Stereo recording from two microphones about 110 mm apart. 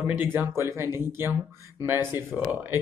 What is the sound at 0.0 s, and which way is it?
Speech, 20° right (ahead or behind).